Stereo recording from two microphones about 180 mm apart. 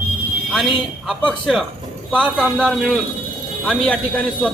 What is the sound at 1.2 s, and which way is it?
A man's voice, centre (ahead or behind).